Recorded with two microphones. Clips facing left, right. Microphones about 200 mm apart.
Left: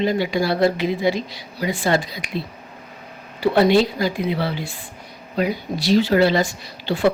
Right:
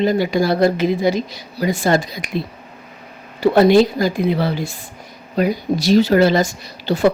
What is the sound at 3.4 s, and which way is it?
Speech, 45° right (ahead or behind).